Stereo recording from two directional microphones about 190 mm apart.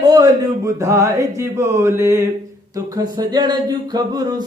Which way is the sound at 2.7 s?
20° right (ahead or behind).